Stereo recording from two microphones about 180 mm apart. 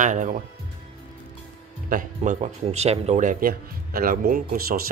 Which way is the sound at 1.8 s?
45° right (ahead or behind).